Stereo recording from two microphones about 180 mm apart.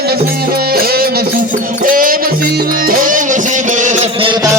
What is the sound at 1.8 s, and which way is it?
Music, 50° right (ahead or behind).